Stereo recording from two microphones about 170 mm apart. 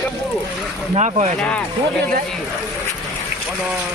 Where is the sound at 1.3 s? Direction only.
5° left (ahead or behind).